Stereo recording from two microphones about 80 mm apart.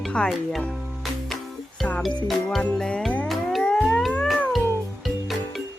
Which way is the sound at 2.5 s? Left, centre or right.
Centre.